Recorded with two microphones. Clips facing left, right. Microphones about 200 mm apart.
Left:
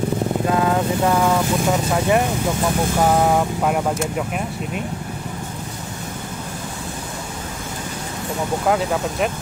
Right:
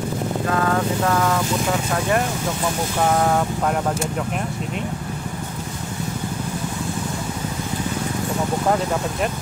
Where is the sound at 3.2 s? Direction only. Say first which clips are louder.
Left 2 dB; 10° left (ahead or behind).